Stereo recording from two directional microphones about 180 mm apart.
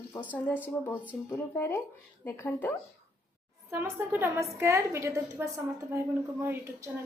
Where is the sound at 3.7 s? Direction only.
15° right (ahead or behind).